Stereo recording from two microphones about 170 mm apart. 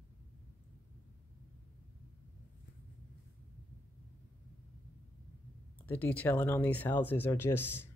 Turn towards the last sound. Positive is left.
turn(degrees=10)  # may be behind; listen again after turning